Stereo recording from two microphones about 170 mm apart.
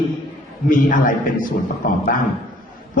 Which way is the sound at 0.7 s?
50° left (ahead or behind).